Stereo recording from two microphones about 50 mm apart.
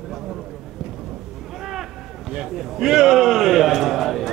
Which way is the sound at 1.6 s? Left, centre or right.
Centre.